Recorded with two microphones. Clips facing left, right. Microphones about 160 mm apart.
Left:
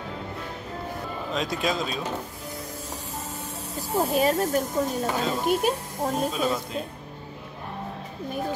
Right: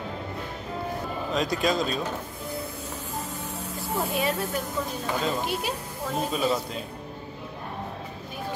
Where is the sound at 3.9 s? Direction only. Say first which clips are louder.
Left 5 dB; 40° left (ahead or behind).